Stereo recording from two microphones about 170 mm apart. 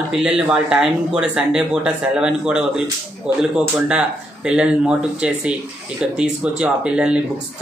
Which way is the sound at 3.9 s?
5° right (ahead or behind).